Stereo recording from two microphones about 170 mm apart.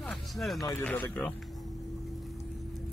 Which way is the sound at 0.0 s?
5° left (ahead or behind).